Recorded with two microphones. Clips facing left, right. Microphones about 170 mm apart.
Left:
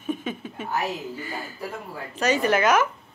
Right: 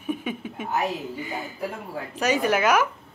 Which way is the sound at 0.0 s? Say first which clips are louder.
Even; 10° right (ahead or behind).